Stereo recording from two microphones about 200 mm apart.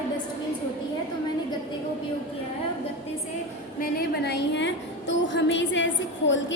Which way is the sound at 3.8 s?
50° left (ahead or behind).